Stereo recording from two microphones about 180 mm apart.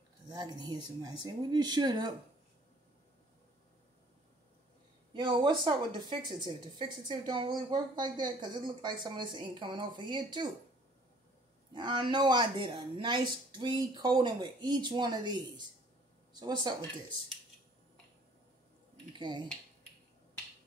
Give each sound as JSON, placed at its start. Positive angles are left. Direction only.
{"t": 0.3, "sound": "a woman's voice", "side_deg": -25}
{"t": 5.1, "sound": "a woman's voice", "side_deg": -25}
{"t": 11.7, "sound": "a woman's voice", "side_deg": -25}
{"t": 19.1, "sound": "a woman's voice", "side_deg": -25}